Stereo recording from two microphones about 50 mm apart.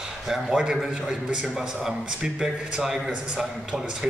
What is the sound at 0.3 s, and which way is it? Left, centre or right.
A man's voice, centre.